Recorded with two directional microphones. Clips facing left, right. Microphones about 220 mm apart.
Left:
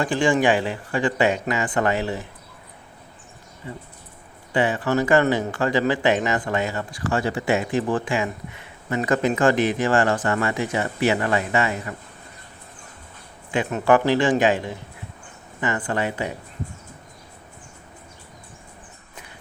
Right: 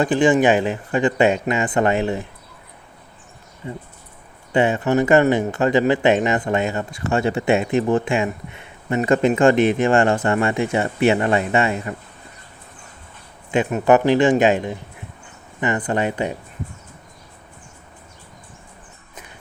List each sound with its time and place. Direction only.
0.0 s speech: 20° right (ahead or behind)
4.5 s speech: 25° right (ahead or behind)
13.5 s speech: 20° right (ahead or behind)